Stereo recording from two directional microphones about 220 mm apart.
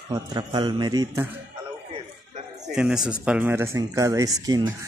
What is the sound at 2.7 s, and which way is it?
Speech, 5° right (ahead or behind).